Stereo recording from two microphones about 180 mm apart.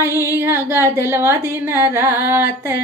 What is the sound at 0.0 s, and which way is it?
Female singing, 15° right (ahead or behind).